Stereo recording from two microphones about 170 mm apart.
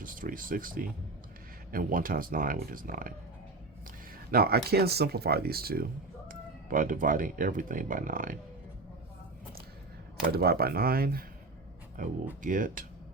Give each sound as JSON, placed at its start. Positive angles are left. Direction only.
{"t": 0.0, "sound": "speech", "side_deg": -55}
{"t": 4.3, "sound": "speech", "side_deg": -65}
{"t": 6.2, "sound": "speech", "side_deg": -50}
{"t": 10.3, "sound": "speech", "side_deg": -65}